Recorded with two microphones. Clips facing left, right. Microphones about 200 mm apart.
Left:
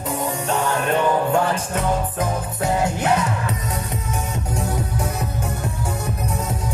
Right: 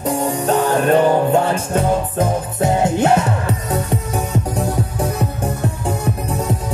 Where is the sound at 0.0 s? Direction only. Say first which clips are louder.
Right 6 dB; 35° right (ahead or behind).